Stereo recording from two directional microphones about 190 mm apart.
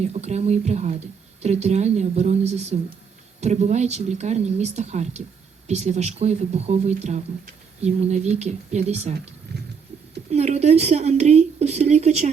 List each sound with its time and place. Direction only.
0.0 s speech: 35° right (ahead or behind)
10.3 s speech: 35° right (ahead or behind)